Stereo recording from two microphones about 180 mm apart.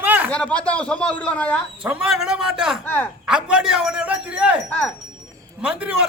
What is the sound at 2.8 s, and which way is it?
Speech, 10° left (ahead or behind).